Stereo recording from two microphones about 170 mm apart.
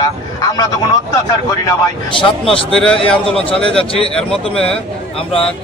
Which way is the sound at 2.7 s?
5° left (ahead or behind).